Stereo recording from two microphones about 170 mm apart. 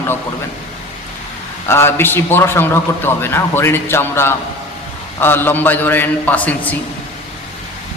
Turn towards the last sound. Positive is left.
turn(degrees=10)  # may be behind; listen again after turning